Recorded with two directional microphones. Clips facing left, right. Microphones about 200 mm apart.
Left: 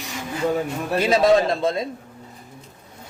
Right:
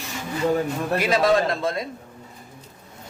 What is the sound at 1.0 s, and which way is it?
Speech, 25° left (ahead or behind).